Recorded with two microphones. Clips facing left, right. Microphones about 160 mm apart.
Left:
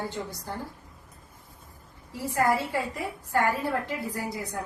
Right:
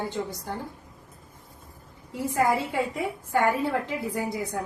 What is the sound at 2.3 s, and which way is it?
A woman's voice, 20° right (ahead or behind).